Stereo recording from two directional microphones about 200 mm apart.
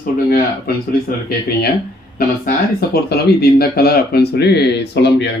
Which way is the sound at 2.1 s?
50° left (ahead or behind).